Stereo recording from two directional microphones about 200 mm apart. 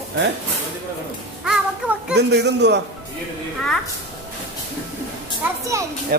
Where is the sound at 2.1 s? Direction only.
55° right (ahead or behind).